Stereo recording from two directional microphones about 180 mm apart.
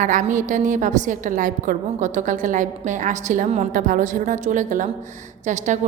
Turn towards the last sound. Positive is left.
turn(degrees=-40)  # may be behind; listen again after turning